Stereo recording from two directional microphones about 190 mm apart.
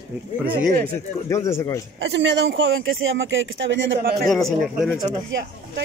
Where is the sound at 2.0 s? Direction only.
70° right (ahead or behind).